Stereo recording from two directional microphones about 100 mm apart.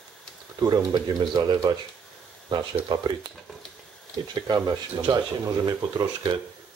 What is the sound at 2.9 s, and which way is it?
Speech, 45° right (ahead or behind).